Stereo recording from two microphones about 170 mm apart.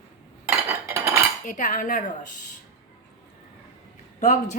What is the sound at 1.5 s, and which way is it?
Speech, 50° left (ahead or behind).